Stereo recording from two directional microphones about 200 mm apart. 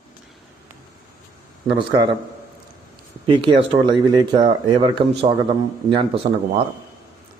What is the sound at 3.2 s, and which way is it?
Speech, 25° right (ahead or behind).